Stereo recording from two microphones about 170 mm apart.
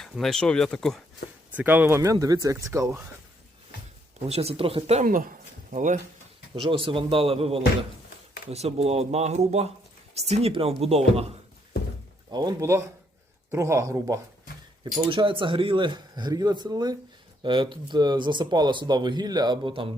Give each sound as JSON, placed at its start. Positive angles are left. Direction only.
{"t": 0.0, "sound": "speech", "side_deg": 0}
{"t": 1.5, "sound": "speech", "side_deg": -10}
{"t": 4.3, "sound": "speech", "side_deg": -35}
{"t": 5.0, "sound": "speech", "side_deg": -55}
{"t": 6.6, "sound": "speech", "side_deg": -30}
{"t": 12.3, "sound": "speech", "side_deg": -25}
{"t": 15.1, "sound": "speech", "side_deg": -30}